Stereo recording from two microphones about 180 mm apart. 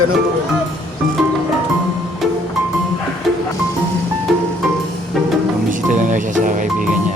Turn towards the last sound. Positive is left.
turn(degrees=-45)  # may be behind; listen again after turning